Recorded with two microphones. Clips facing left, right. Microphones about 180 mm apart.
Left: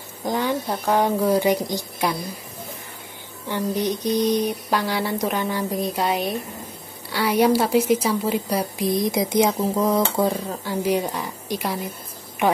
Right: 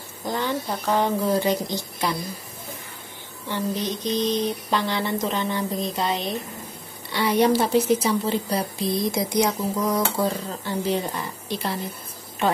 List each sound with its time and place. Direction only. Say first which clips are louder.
0.2 s speech: left 3 dB; 15° left (ahead or behind)
3.4 s speech: left 3 dB; 15° left (ahead or behind)
10.5 s speech: left 3 dB; 10° left (ahead or behind)